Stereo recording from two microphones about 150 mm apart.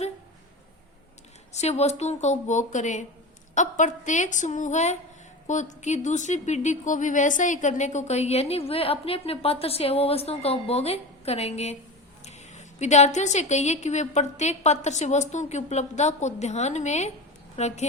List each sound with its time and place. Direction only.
1.5 s a woman's voice: 45° left (ahead or behind)